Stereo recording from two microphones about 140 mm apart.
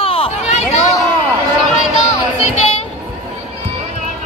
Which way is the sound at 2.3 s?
45° left (ahead or behind).